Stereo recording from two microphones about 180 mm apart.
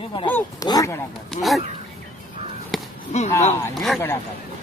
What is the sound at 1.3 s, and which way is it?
Speech, centre (ahead or behind).